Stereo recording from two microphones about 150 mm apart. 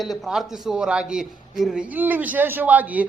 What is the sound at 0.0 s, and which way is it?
A man's voice, centre (ahead or behind).